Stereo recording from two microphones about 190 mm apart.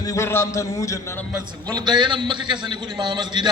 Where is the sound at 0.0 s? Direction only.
15° left (ahead or behind).